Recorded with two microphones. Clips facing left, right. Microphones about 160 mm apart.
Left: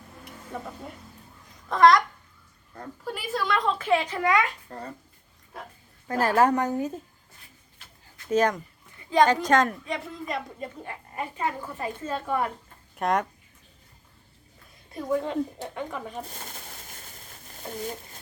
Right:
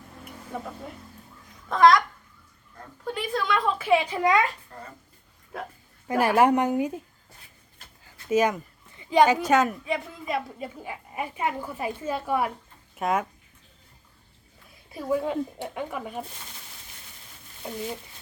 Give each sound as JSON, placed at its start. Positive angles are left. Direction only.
{"t": 0.5, "sound": "a woman's voice", "side_deg": 0}
{"t": 1.7, "sound": "a woman's voice", "side_deg": 0}
{"t": 3.0, "sound": "a sound", "side_deg": 5}
{"t": 6.1, "sound": "a woman's voice", "side_deg": -15}
{"t": 8.3, "sound": "a woman's voice", "side_deg": -10}
{"t": 14.9, "sound": "a woman's voice", "side_deg": -5}
{"t": 16.3, "sound": "speech", "side_deg": 45}